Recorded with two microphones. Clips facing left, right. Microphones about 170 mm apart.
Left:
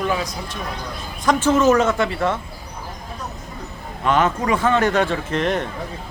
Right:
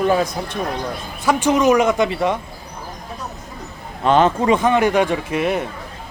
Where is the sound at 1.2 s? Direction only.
10° right (ahead or behind).